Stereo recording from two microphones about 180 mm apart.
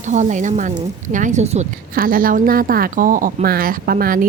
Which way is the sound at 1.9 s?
55° right (ahead or behind).